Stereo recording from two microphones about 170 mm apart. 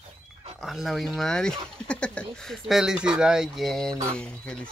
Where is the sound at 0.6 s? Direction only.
Centre (ahead or behind).